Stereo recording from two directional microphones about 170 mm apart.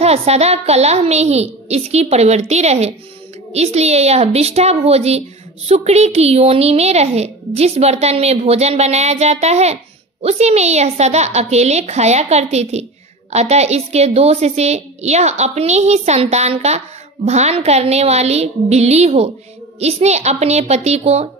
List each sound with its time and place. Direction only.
0.0 s a woman's voice: 35° right (ahead or behind)